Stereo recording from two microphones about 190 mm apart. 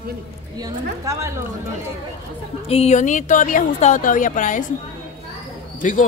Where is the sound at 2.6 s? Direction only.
35° left (ahead or behind).